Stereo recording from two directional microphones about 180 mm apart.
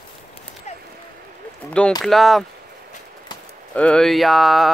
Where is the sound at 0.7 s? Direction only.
40° left (ahead or behind).